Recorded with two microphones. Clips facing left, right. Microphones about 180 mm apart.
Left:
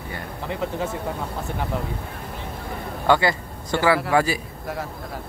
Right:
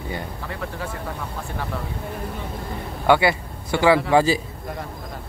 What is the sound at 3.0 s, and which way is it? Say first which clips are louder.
A man's voice: right 2 dB; 15° right (ahead or behind).